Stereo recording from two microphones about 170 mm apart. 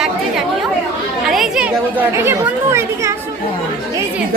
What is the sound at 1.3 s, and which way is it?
Speech, centre (ahead or behind).